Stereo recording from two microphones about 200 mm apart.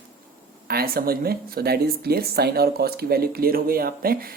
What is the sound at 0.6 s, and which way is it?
Speech, 50° right (ahead or behind).